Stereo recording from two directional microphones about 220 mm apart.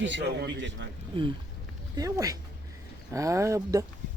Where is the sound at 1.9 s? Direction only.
15° right (ahead or behind).